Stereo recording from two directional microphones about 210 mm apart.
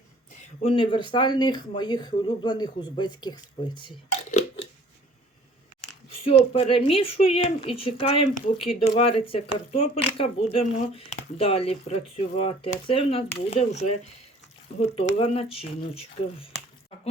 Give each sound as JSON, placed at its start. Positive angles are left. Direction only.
{"t": 0.6, "sound": "speech", "side_deg": 25}
{"t": 4.3, "sound": "a sound", "side_deg": 30}
{"t": 6.5, "sound": "speech", "side_deg": 25}